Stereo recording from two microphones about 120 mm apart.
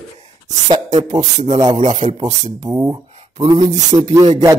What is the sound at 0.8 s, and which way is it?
Speech, 90° right.